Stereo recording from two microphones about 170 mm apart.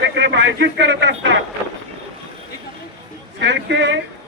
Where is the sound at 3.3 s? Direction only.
90° right.